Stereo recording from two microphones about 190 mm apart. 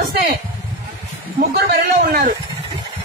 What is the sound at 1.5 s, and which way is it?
Speech, 55° right (ahead or behind).